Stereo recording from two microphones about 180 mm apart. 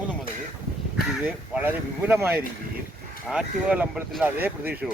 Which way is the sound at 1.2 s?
10° right (ahead or behind).